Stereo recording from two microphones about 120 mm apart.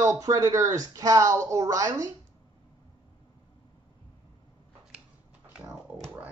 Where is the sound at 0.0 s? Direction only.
25° right (ahead or behind).